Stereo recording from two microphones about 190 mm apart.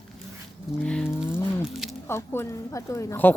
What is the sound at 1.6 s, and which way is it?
Speech, centre (ahead or behind).